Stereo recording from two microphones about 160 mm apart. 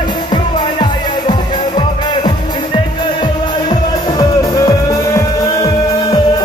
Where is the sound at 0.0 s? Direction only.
25° left (ahead or behind).